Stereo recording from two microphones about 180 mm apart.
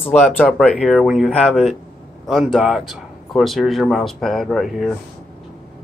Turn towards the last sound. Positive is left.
turn(degrees=0)  # may be behind; listen again after turning